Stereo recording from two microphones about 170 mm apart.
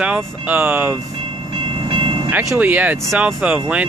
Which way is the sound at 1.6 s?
30° right (ahead or behind).